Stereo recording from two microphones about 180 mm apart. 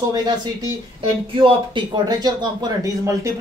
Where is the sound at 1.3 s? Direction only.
25° right (ahead or behind).